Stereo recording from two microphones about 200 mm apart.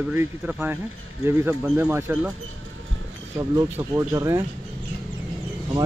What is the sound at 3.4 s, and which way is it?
Speech, 15° right (ahead or behind).